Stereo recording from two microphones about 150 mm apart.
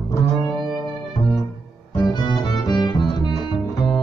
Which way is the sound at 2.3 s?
30° left (ahead or behind).